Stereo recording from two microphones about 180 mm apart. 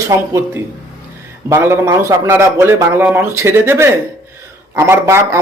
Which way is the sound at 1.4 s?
15° right (ahead or behind).